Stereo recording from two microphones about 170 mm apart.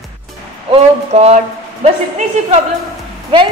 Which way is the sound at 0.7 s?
40° right (ahead or behind).